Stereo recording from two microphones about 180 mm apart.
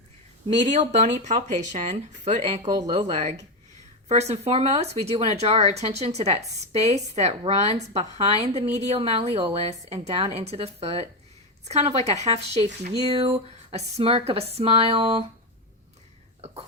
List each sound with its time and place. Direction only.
0.7 s speech: 40° right (ahead or behind)